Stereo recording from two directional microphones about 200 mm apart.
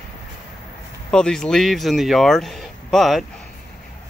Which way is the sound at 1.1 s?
5° left (ahead or behind).